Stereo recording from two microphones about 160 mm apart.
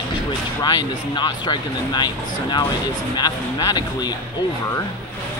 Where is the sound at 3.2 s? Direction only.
25° left (ahead or behind).